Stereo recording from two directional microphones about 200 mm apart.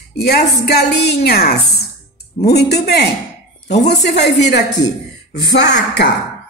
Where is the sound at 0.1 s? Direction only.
50° left (ahead or behind).